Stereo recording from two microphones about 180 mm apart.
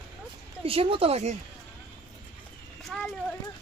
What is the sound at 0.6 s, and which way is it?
Speech, 30° right (ahead or behind).